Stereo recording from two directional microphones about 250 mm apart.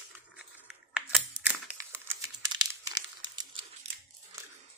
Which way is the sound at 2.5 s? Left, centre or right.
Centre.